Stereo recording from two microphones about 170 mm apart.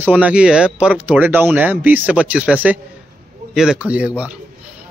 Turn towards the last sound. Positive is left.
turn(degrees=-10)  # may be behind; listen again after turning